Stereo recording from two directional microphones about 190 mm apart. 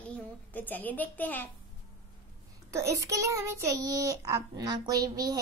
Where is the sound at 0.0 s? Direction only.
10° left (ahead or behind).